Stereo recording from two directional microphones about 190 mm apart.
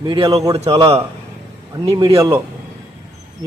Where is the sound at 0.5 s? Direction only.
30° right (ahead or behind).